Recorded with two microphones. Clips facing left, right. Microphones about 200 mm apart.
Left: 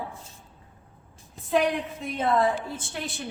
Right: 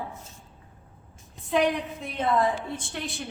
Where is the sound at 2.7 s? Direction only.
Centre (ahead or behind).